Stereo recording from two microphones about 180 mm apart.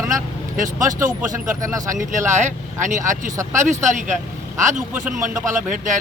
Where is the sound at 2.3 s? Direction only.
45° right (ahead or behind).